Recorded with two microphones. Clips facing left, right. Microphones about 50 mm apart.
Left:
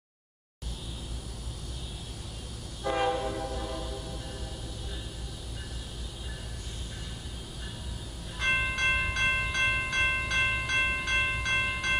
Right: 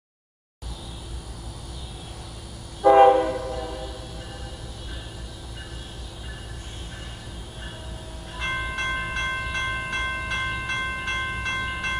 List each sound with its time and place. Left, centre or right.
2.8 s train: right
8.4 s train: centre